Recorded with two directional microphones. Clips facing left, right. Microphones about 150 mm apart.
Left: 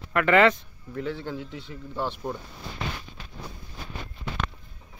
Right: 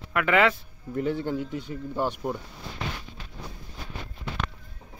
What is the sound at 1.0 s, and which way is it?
Speech, 50° right (ahead or behind).